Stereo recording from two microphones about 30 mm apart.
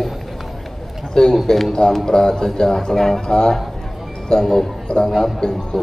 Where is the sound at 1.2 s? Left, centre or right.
Left.